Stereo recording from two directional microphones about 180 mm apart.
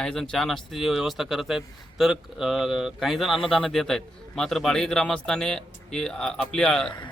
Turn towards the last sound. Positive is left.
turn(degrees=5)  # may be behind; listen again after turning